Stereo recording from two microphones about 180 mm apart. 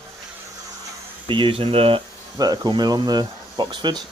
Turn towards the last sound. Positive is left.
turn(degrees=-25)  # may be behind; listen again after turning